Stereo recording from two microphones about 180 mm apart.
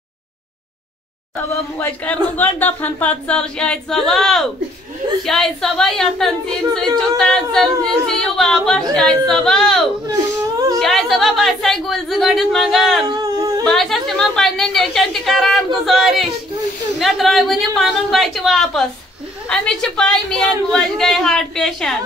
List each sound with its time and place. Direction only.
1.5 s a woman's voice: 10° left (ahead or behind)
13.1 s humming: 20° right (ahead or behind)
13.7 s a woman's voice: centre (ahead or behind)